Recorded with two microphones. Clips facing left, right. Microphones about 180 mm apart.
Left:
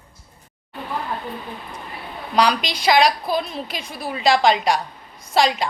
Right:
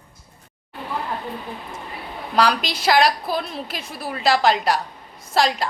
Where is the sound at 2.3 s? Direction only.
5° right (ahead or behind).